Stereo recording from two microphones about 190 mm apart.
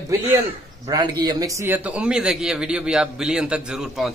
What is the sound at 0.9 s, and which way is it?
Speech, 20° right (ahead or behind).